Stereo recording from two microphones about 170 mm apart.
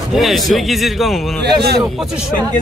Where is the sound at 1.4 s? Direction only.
75° right (ahead or behind).